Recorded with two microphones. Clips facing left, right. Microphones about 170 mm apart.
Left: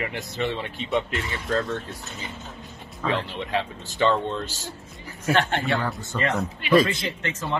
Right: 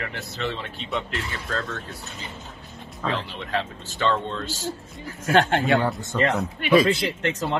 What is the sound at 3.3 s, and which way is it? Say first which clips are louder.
A man's voice: left 1 dB; 10° left (ahead or behind).